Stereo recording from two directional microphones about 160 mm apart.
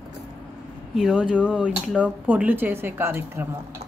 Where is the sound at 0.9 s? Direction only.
5° right (ahead or behind).